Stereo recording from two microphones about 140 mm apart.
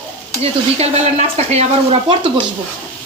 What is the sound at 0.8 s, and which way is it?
Speech, 50° right (ahead or behind).